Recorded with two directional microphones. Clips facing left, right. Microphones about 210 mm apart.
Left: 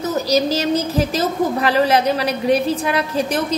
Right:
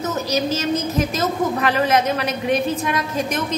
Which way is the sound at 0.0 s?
35° left (ahead or behind).